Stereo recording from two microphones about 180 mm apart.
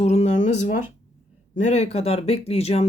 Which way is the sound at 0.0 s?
40° left (ahead or behind).